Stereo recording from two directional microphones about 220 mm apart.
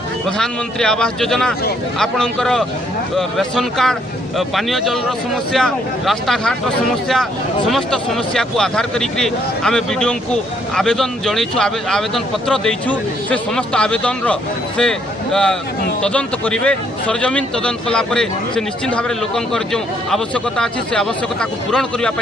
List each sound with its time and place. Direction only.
0.4 s speech: 5° left (ahead or behind)
7.7 s speech: centre (ahead or behind)